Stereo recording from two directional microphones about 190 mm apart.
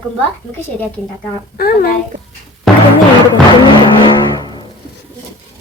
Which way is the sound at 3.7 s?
25° left (ahead or behind).